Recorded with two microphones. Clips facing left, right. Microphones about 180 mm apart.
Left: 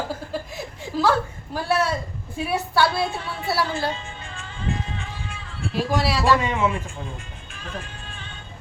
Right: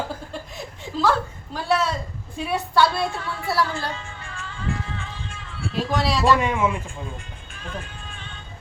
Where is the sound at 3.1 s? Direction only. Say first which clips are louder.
Even; 20° left (ahead or behind).